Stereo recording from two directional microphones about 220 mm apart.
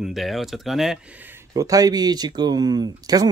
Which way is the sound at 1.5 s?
15° right (ahead or behind).